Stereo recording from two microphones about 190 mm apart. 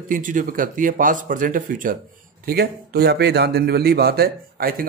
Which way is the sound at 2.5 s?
55° right (ahead or behind).